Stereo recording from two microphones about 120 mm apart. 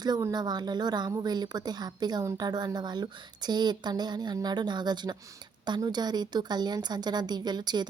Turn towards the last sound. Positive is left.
turn(degrees=-35)  # may be behind; listen again after turning